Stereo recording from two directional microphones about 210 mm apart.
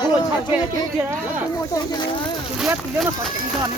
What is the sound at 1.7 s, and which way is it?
Speech, 20° left (ahead or behind).